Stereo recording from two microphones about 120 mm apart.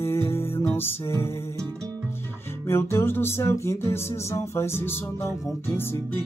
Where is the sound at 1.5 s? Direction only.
25° right (ahead or behind).